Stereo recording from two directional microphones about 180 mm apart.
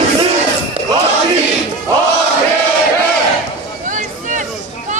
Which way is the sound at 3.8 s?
45° right (ahead or behind).